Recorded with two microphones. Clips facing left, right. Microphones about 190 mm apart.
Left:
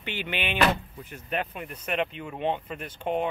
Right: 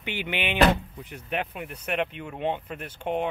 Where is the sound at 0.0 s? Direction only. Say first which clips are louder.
Right 2 dB; 15° right (ahead or behind).